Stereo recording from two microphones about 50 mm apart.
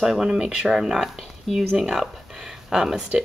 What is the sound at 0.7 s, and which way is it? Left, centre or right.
Speech, centre.